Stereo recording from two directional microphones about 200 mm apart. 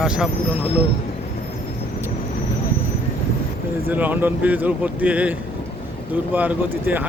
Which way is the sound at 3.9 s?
10° right (ahead or behind).